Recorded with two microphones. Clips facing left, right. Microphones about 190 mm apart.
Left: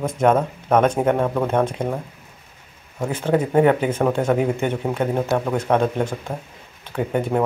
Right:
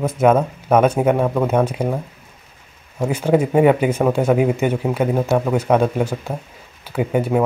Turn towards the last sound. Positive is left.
turn(degrees=-5)  # may be behind; listen again after turning